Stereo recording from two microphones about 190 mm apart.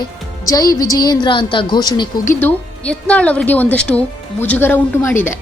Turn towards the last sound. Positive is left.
turn(degrees=10)  # may be behind; listen again after turning